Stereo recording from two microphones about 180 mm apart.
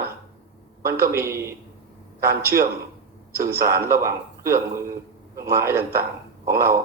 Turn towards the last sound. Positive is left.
turn(degrees=-15)  # may be behind; listen again after turning